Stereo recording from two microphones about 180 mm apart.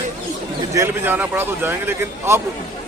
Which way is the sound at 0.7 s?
15° right (ahead or behind).